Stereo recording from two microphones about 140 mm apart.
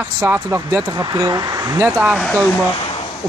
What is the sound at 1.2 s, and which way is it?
Speech, 30° right (ahead or behind).